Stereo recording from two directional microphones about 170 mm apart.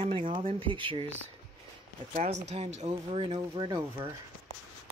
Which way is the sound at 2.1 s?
40° right (ahead or behind).